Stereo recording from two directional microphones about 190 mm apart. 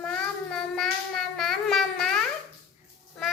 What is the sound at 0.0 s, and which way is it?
Child singing, 5° left (ahead or behind).